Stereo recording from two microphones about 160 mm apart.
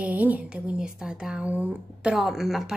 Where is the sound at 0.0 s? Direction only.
10° right (ahead or behind).